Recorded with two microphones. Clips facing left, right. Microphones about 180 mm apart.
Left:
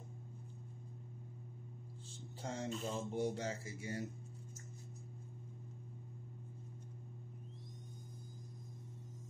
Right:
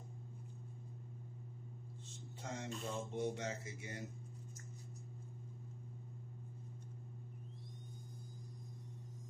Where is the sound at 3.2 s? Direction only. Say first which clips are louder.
Left 2 dB; 30° left (ahead or behind).